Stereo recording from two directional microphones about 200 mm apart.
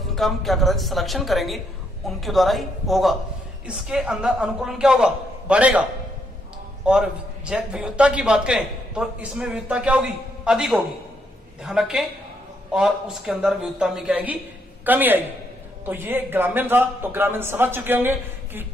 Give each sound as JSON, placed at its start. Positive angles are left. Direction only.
{"t": 0.1, "sound": "a man's voice", "side_deg": 0}
{"t": 6.9, "sound": "a man's voice", "side_deg": -5}